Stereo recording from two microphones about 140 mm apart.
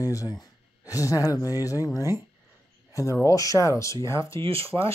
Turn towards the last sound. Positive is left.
turn(degrees=-45)  # may be behind; listen again after turning